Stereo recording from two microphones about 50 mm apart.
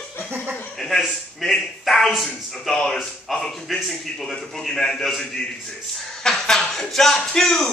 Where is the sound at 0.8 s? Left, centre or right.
Centre.